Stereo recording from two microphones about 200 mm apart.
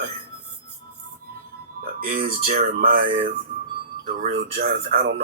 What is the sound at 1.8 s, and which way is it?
Speech, 45° right (ahead or behind).